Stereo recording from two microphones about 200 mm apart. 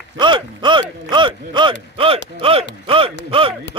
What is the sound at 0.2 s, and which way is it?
Speech, 25° right (ahead or behind).